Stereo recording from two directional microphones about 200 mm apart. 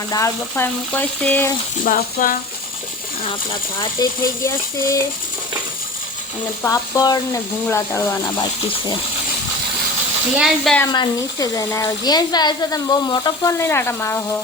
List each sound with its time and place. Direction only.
0.1 s speech: 15° left (ahead or behind)
1.8 s speech: 40° left (ahead or behind)
3.8 s speech: 15° left (ahead or behind)
6.6 s speech: 15° left (ahead or behind)
10.3 s speech: centre (ahead or behind)
10.9 s speech: 20° left (ahead or behind)